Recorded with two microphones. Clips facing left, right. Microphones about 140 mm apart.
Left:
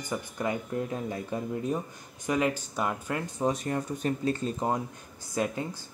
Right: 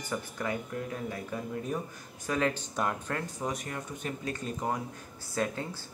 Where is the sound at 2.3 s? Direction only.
15° left (ahead or behind).